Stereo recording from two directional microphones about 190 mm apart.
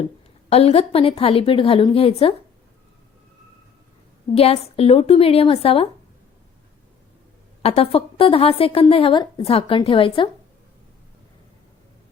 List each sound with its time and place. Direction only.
0.5 s speech: 30° left (ahead or behind)
4.4 s a woman's voice: 30° left (ahead or behind)
7.6 s a woman's voice: 30° left (ahead or behind)